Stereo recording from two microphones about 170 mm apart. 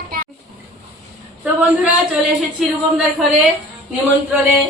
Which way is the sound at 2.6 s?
5° right (ahead or behind).